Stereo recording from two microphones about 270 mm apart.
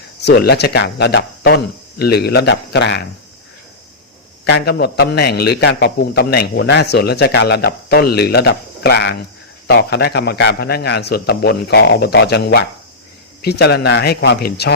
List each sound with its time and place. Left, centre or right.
0.3 s a man's voice: left
4.4 s a man's voice: left